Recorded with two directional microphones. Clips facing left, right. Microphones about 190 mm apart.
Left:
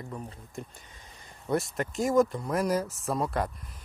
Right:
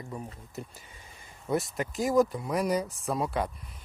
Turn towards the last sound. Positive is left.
turn(degrees=0)  # may be behind; listen again after turning